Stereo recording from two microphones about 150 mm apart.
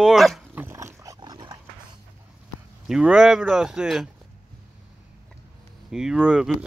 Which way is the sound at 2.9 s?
5° right (ahead or behind).